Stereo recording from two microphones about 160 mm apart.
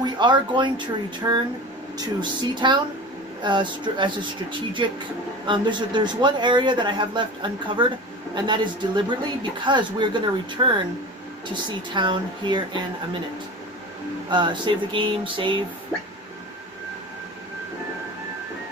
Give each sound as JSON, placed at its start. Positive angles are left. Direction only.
{"t": 0.0, "sound": "speech", "side_deg": -30}
{"t": 14.3, "sound": "speech", "side_deg": -30}